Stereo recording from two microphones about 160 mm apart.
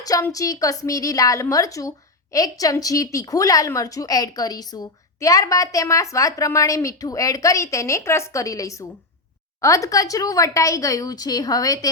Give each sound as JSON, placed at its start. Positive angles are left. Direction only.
{"t": 0.0, "sound": "a woman's voice", "side_deg": 20}